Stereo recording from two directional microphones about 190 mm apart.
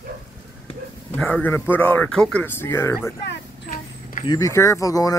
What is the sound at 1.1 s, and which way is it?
Speech, 5° left (ahead or behind).